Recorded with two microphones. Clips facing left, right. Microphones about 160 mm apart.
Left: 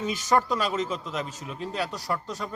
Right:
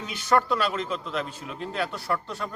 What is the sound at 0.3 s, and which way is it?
Speech, 15° left (ahead or behind).